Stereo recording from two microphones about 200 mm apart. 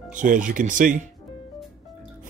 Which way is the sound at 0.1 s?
40° right (ahead or behind).